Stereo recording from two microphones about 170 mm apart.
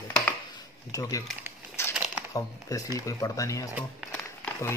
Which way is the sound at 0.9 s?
20° left (ahead or behind).